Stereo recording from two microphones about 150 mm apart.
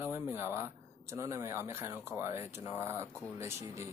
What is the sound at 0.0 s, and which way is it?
Speech, 15° right (ahead or behind).